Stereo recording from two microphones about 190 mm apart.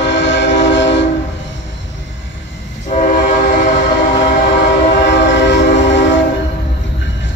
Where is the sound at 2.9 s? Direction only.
45° left (ahead or behind).